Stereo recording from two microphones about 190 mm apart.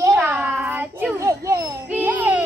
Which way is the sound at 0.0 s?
10° right (ahead or behind).